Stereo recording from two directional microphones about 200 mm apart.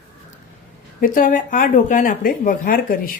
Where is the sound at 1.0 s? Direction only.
40° left (ahead or behind).